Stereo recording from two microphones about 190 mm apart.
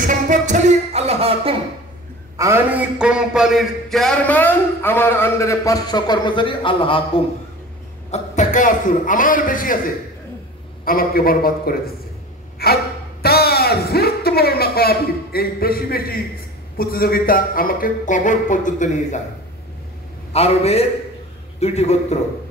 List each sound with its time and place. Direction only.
0.0 s music: 40° right (ahead or behind)
2.3 s a man's voice: 15° right (ahead or behind); by 7.0 s 25° left (ahead or behind)
8.1 s a man's voice: 40° left (ahead or behind)
10.9 s a man's voice: 50° left (ahead or behind)
12.6 s gasp: 55° left (ahead or behind)
13.2 s a woman's voice: 55° left (ahead or behind)
20.3 s a man's voice: 35° left (ahead or behind)